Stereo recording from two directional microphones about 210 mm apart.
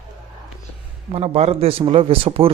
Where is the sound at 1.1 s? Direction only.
30° right (ahead or behind).